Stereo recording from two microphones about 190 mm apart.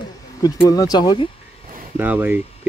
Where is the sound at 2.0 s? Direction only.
10° right (ahead or behind).